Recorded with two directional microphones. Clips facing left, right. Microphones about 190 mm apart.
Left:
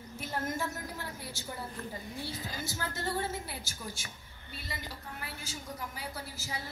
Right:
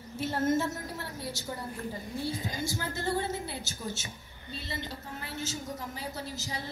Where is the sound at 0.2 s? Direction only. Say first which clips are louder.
Right 8 dB; 25° right (ahead or behind).